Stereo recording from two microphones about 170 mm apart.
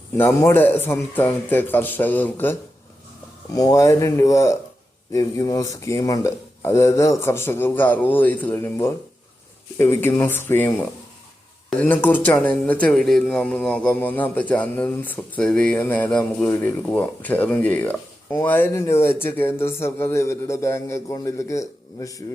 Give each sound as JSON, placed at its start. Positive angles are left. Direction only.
{"t": 0.2, "sound": "a man's voice", "side_deg": 15}